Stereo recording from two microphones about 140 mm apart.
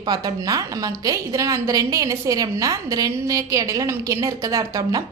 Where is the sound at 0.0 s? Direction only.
30° right (ahead or behind).